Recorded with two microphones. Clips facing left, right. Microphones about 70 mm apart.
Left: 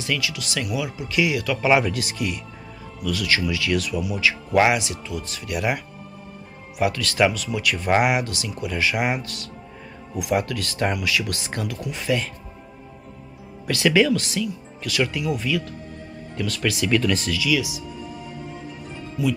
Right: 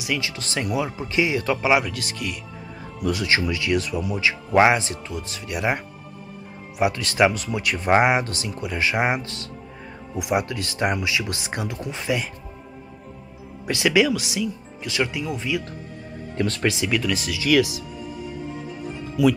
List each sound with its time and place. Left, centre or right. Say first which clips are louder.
0.2 s speech: even; right
1.6 s speech: left 2 dB; centre
1.9 s speech: left 4 dB; centre
3.1 s speech: right 1 dB; right
6.8 s speech: right 1 dB; right
13.7 s speech: left 1 dB; centre
14.9 s speech: left 2 dB; right
16.3 s speech: right 3 dB; right
16.6 s speech: left 1 dB; right
16.9 s speech: left 3 dB; centre
17.5 s speech: right 6 dB; right
19.2 s speech: right 5 dB; right